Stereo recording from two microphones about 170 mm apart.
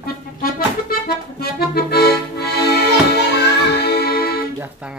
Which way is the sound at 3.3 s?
70° left (ahead or behind).